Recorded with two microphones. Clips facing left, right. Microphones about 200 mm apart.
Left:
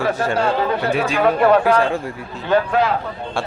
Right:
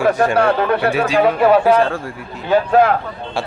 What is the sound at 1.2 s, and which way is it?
Speech, 5° right (ahead or behind).